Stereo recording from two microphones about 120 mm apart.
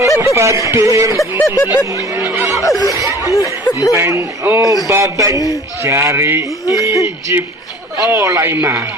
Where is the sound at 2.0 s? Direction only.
25° right (ahead or behind).